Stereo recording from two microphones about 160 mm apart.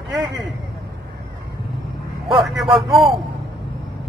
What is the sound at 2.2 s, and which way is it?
Speech, centre (ahead or behind).